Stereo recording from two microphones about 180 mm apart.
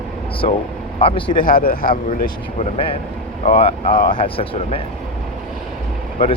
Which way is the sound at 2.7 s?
30° left (ahead or behind).